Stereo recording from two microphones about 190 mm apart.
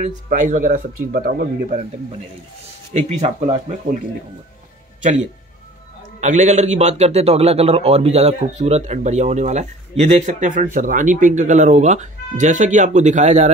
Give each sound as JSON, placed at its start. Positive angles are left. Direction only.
{"t": 0.0, "sound": "speech", "side_deg": -40}
{"t": 2.9, "sound": "a man's voice", "side_deg": -30}
{"t": 6.2, "sound": "a man's voice", "side_deg": -40}